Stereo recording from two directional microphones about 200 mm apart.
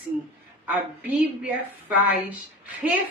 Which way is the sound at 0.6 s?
5° right (ahead or behind).